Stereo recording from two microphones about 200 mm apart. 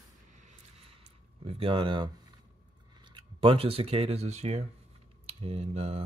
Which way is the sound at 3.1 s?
25° right (ahead or behind).